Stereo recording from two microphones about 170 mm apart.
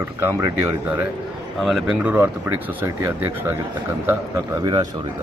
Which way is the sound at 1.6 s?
Centre (ahead or behind).